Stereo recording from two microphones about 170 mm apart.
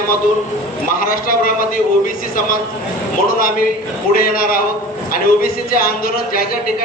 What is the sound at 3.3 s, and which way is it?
Speech, 55° left (ahead or behind).